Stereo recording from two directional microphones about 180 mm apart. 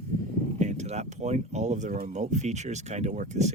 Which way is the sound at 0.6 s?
40° right (ahead or behind).